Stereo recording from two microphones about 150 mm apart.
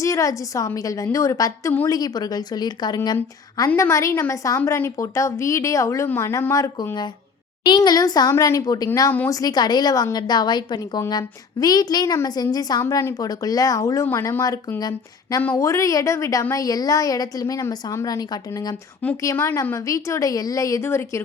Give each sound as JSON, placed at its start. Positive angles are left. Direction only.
{"t": 0.0, "sound": "a woman's voice", "side_deg": 20}